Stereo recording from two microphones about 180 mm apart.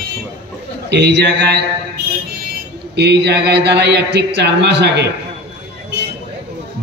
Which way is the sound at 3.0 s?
70° right (ahead or behind).